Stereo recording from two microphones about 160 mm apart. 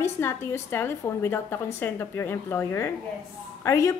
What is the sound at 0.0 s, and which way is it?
A woman's voice, 15° left (ahead or behind).